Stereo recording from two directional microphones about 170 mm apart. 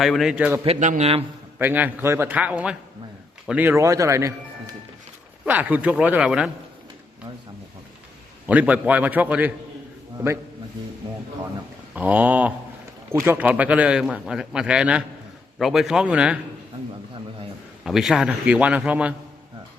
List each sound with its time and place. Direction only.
0.0 s a man's voice: centre (ahead or behind)
0.6 s speech: 40° right (ahead or behind)
1.5 s speech: 10° right (ahead or behind)
8.4 s speech: 10° right (ahead or behind)
11.9 s a man's voice: 10° right (ahead or behind)
17.8 s a man's voice: centre (ahead or behind)